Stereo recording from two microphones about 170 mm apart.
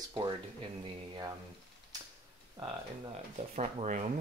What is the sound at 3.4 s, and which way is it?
Speech, 40° right (ahead or behind).